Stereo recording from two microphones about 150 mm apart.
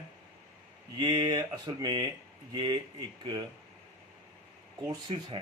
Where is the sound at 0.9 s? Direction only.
30° right (ahead or behind).